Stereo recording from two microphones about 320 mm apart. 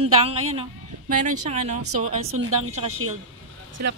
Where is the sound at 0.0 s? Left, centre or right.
Centre.